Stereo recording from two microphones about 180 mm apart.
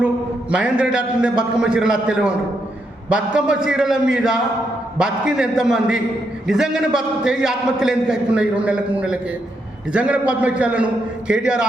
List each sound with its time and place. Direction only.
0.5 s a man's voice: 5° right (ahead or behind)